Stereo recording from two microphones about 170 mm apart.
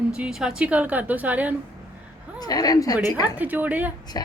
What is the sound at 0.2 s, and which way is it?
A woman's voice, 5° right (ahead or behind).